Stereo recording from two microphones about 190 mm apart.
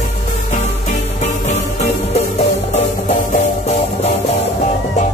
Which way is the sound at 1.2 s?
35° left (ahead or behind).